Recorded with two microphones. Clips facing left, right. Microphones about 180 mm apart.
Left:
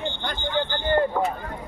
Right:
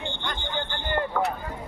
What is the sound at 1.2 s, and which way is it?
Speech, 15° left (ahead or behind).